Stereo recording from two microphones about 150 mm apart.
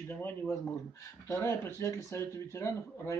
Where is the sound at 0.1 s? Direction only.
15° left (ahead or behind).